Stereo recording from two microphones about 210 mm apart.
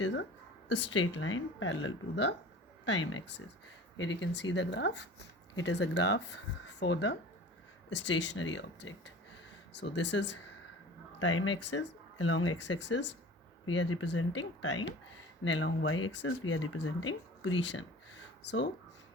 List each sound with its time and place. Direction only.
0.0 s speech: 60° left (ahead or behind)
11.2 s speech: 75° left (ahead or behind)
11.6 s speech: 60° left (ahead or behind)